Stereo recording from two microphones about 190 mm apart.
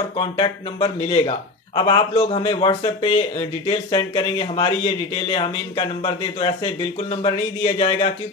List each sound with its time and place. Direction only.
0.2 s speech: 30° left (ahead or behind)